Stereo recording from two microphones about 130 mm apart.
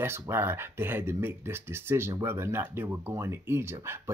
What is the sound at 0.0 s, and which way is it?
Speech, 20° right (ahead or behind).